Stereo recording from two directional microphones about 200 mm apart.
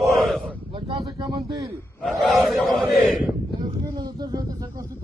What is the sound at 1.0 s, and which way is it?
Speech, 25° right (ahead or behind).